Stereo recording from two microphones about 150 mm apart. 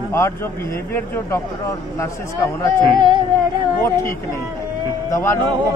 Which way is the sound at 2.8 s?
30° right (ahead or behind).